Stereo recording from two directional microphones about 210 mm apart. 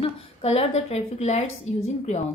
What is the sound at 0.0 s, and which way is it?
A woman's voice, 30° left (ahead or behind).